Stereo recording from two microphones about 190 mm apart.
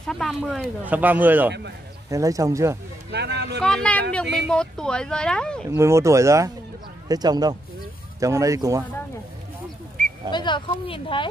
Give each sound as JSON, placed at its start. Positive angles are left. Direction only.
{"t": 0.0, "sound": "speech", "side_deg": 0}
{"t": 3.1, "sound": "speech", "side_deg": -60}
{"t": 3.6, "sound": "speech", "side_deg": 5}
{"t": 5.7, "sound": "speech", "side_deg": -15}
{"t": 10.3, "sound": "speech", "side_deg": 25}